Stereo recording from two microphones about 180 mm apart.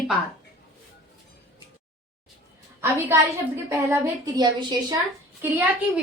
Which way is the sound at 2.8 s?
15° right (ahead or behind).